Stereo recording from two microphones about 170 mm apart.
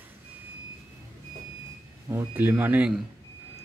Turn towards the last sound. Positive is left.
turn(degrees=-10)  # may be behind; listen again after turning